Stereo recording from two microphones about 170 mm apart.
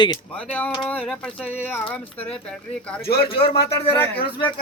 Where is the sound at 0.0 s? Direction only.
25° left (ahead or behind).